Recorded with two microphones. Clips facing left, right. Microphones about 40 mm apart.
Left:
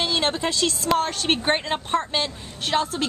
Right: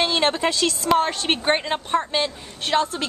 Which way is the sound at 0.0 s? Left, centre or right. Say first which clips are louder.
Right 3 dB; right.